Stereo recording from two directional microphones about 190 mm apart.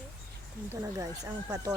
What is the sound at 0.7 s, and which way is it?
Speech, 15° right (ahead or behind).